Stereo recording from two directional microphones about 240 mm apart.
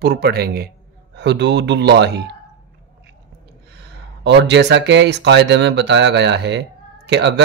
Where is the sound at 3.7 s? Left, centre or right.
Right.